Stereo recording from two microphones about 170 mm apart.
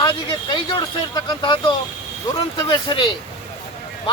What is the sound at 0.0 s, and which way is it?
Speech, 30° left (ahead or behind).